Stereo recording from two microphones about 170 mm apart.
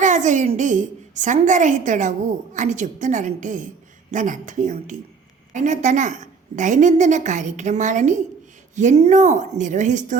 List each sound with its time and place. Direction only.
0.0 s a woman's voice: 45° right (ahead or behind)